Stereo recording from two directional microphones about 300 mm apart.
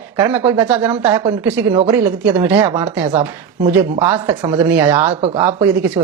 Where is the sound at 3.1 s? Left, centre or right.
Right.